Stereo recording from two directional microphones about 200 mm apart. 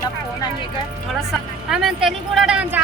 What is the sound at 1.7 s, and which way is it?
Speech, centre (ahead or behind).